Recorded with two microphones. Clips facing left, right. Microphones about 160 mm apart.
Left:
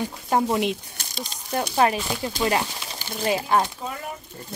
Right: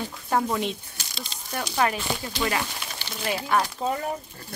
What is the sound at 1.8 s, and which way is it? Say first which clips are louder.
Speech: left 4 dB; 25° left (ahead or behind).